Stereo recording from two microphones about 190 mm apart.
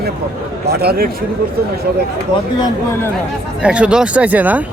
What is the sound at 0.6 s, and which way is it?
Speech, 55° right (ahead or behind).